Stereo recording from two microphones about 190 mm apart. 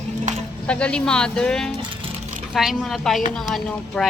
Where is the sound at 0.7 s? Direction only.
5° left (ahead or behind).